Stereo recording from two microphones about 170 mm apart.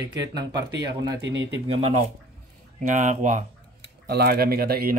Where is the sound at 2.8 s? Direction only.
45° right (ahead or behind).